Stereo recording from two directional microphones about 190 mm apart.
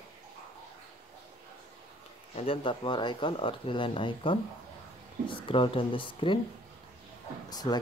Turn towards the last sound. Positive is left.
turn(degrees=20)  # may be behind; listen again after turning